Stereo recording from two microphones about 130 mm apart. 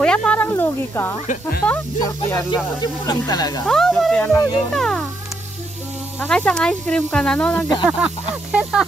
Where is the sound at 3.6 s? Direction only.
5° left (ahead or behind).